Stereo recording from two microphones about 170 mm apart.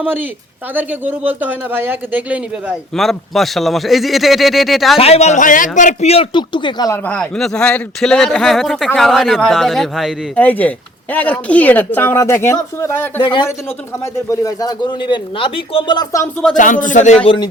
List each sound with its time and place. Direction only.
0.0 s speech: 10° right (ahead or behind)
2.9 s speech: centre (ahead or behind)
4.9 s a man's voice: 35° left (ahead or behind)
7.0 s speech: 5° left (ahead or behind)
10.4 s speech: 10° left (ahead or behind)
13.2 s a man's voice: 30° left (ahead or behind)
16.6 s speech: 50° left (ahead or behind)
17.2 s a man's voice: 30° left (ahead or behind)